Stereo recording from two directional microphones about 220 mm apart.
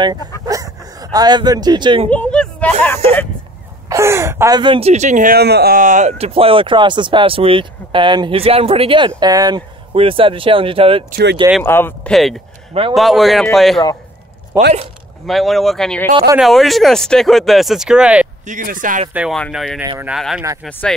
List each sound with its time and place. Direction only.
0.5 s a sound: 15° right (ahead or behind)
2.0 s a sound: 5° left (ahead or behind)
3.9 s speech: 10° right (ahead or behind)
11.1 s speech: 45° right (ahead or behind)
11.6 s speech: 10° left (ahead or behind)
14.5 s speech: 15° right (ahead or behind)
15.2 s speech: centre (ahead or behind)
18.4 s speech: 35° right (ahead or behind)
19.1 s speech: centre (ahead or behind)